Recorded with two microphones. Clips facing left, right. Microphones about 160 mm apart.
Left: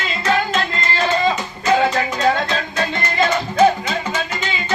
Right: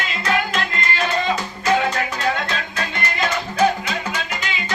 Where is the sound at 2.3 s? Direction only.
35° left (ahead or behind).